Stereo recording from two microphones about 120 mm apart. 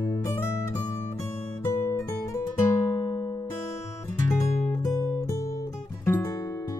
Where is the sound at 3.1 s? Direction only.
35° left (ahead or behind).